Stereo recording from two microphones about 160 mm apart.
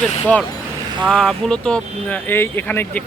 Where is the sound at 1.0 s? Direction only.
5° left (ahead or behind).